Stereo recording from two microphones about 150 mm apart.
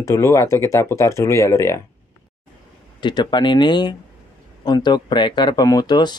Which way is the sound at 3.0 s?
30° left (ahead or behind).